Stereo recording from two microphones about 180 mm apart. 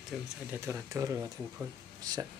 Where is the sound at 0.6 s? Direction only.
15° right (ahead or behind).